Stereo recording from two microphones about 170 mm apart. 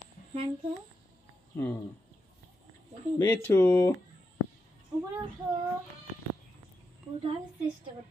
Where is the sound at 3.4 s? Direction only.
10° left (ahead or behind).